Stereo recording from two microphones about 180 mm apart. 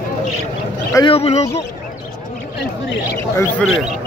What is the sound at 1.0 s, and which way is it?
Speech, 35° left (ahead or behind).